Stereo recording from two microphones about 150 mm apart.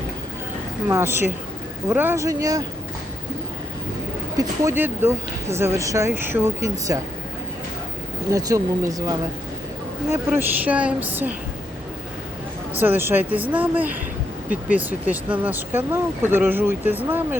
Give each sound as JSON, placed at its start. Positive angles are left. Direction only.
{"t": 0.9, "sound": "speech", "side_deg": -15}
{"t": 4.4, "sound": "speech", "side_deg": -15}
{"t": 8.3, "sound": "speech", "side_deg": -20}
{"t": 10.1, "sound": "speech", "side_deg": -15}
{"t": 12.8, "sound": "speech", "side_deg": -15}